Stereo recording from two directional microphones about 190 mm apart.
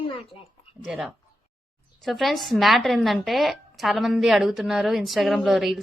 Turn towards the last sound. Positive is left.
turn(degrees=0)  # may be behind; listen again after turning